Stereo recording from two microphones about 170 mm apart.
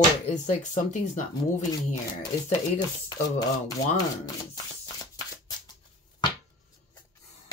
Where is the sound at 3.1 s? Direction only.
20° left (ahead or behind).